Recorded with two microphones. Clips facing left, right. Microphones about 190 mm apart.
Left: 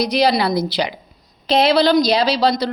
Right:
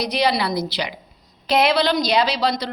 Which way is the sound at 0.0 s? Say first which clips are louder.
Left 4 dB; 40° left (ahead or behind).